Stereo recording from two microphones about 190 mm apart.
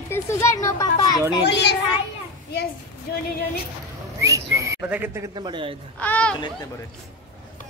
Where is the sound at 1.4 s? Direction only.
65° left (ahead or behind).